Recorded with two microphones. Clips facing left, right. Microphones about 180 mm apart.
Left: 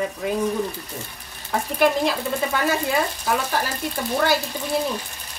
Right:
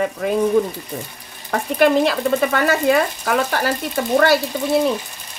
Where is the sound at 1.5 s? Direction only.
70° right (ahead or behind).